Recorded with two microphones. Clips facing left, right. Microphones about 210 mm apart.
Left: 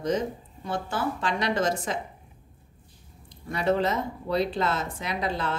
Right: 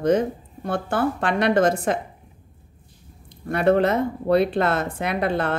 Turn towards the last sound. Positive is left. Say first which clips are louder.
# right 7 dB
turn(degrees=-60)  # may be behind; listen again after turning